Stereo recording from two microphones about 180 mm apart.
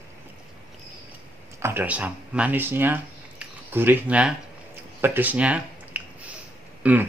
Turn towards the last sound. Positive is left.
turn(degrees=-10)  # may be behind; listen again after turning